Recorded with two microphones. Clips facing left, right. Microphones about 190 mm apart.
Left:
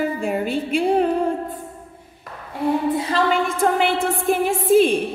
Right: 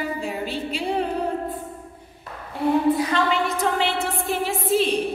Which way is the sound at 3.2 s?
50° left (ahead or behind).